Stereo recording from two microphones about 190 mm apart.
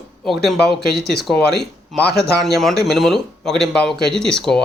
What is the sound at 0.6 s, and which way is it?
Speech, 60° left (ahead or behind).